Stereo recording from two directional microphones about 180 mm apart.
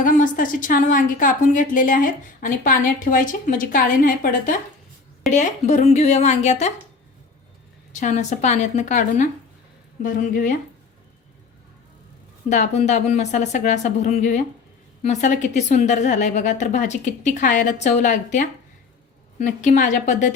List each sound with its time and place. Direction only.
0.0 s a woman's voice: 50° left (ahead or behind)
7.9 s a woman's voice: 40° left (ahead or behind)
12.5 s a woman's voice: 40° left (ahead or behind)